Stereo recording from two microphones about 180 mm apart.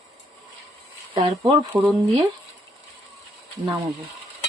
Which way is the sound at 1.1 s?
25° right (ahead or behind).